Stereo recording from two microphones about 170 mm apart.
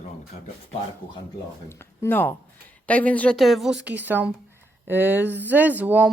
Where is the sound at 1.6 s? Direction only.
15° left (ahead or behind).